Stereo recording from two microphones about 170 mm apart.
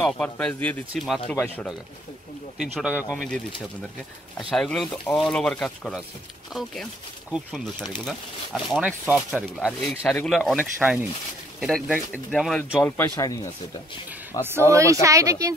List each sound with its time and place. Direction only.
0.0 s speech: 5° left (ahead or behind)
1.3 s speech: 10° left (ahead or behind)
2.6 s speech: 5° right (ahead or behind)
4.4 s speech: centre (ahead or behind)
8.7 s speech: 10° right (ahead or behind)
10.8 s speech: 10° right (ahead or behind)
12.7 s speech: 15° left (ahead or behind)
14.7 s speech: 20° right (ahead or behind)